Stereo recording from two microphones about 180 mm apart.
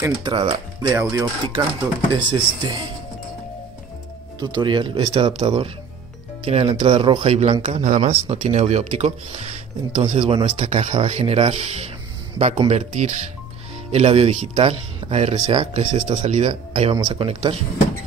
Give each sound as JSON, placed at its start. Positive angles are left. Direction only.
{"t": 0.0, "sound": "speech", "side_deg": -30}
{"t": 4.4, "sound": "speech", "side_deg": -25}